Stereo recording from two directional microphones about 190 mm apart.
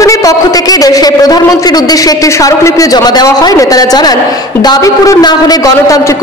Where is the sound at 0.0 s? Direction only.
15° left (ahead or behind).